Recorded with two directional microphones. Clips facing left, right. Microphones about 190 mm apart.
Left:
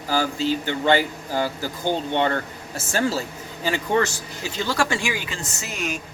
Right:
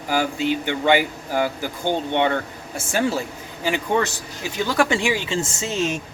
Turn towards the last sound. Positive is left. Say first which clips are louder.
# right 6 dB
turn(degrees=-25)  # may be behind; listen again after turning